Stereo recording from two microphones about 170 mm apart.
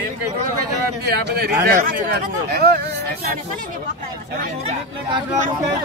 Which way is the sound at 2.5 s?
65° right (ahead or behind).